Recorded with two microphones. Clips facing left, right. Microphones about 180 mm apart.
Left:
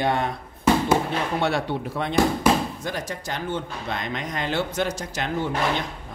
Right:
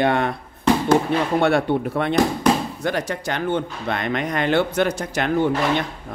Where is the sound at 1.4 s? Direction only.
55° right (ahead or behind).